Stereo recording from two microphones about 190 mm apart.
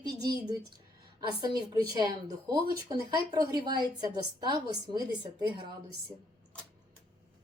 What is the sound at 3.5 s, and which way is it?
A woman's voice, 20° right (ahead or behind).